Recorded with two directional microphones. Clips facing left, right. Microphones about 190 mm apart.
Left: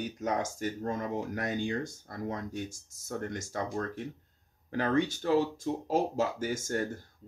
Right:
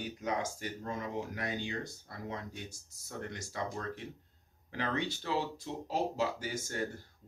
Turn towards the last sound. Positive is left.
turn(degrees=45)  # may be behind; listen again after turning